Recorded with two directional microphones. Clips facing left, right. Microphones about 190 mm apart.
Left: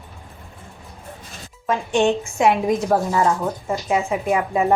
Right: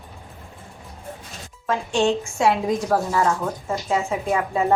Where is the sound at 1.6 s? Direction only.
20° left (ahead or behind).